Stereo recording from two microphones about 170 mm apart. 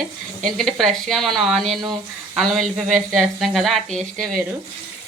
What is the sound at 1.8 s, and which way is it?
Speech, 25° right (ahead or behind).